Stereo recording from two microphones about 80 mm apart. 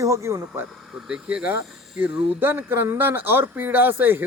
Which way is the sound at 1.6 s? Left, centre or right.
Centre.